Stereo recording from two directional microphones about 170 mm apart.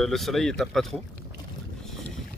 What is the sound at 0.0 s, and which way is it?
Speech, centre (ahead or behind).